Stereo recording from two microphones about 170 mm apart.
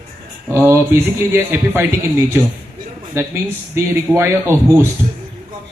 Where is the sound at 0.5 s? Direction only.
15° right (ahead or behind).